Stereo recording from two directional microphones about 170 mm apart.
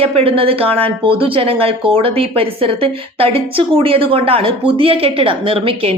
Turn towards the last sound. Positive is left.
turn(degrees=-35)  # may be behind; listen again after turning